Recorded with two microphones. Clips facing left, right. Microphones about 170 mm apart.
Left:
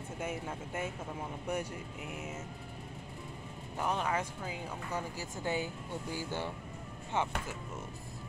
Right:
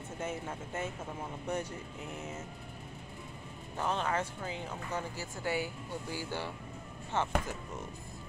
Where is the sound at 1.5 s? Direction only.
10° left (ahead or behind).